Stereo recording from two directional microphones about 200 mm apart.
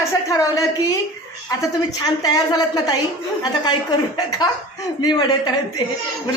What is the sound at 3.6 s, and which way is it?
A woman's voice, 20° left (ahead or behind).